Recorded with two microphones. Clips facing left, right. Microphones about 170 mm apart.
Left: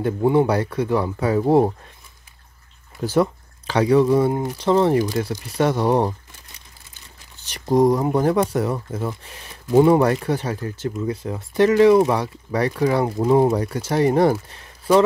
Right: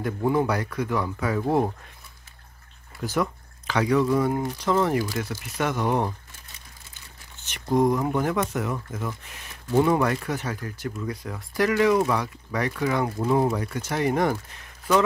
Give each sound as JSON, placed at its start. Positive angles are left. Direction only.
{"t": 0.0, "sound": "speech", "side_deg": 30}
{"t": 3.0, "sound": "speech", "side_deg": 30}
{"t": 7.3, "sound": "speech", "side_deg": 35}